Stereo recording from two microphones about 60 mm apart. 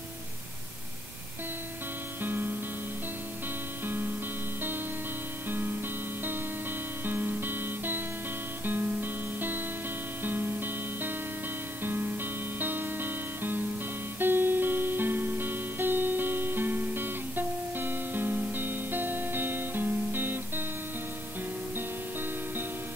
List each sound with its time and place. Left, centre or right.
2.2 s music: right
3.8 s music: right
7.1 s music: right